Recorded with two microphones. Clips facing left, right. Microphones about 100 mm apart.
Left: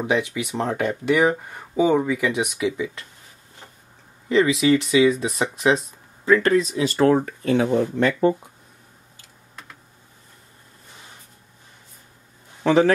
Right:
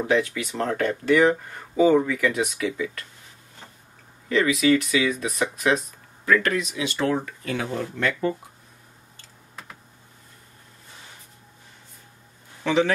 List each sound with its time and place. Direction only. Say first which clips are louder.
0.0 s speech: even; 15° left (ahead or behind)
4.3 s speech: left 2 dB; 25° left (ahead or behind)
7.5 s speech: left 9 dB; 20° left (ahead or behind)
12.6 s a man's voice: left 5 dB; 40° left (ahead or behind)